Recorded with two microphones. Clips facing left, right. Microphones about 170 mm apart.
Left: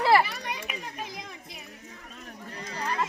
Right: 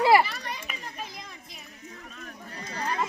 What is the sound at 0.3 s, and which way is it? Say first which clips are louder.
Children playing: left 1 dB; 15° left (ahead or behind).